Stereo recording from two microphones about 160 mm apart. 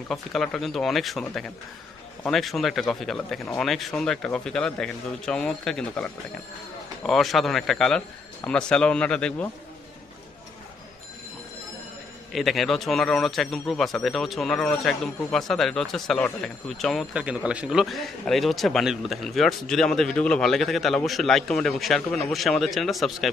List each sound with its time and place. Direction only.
0.1 s a man's voice: centre (ahead or behind)
2.2 s a man's voice: centre (ahead or behind)
12.3 s a man's voice: centre (ahead or behind)